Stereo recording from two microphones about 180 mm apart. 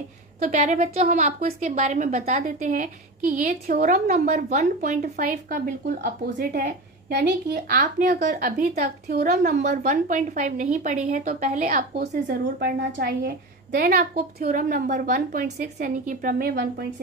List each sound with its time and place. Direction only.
0.4 s a woman's voice: 40° right (ahead or behind); by 7.8 s 60° right (ahead or behind)
7.8 s a woman's voice: 45° right (ahead or behind)
12.5 s a woman's voice: 60° right (ahead or behind)